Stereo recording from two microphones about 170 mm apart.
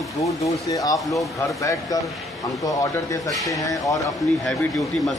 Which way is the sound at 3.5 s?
20° left (ahead or behind).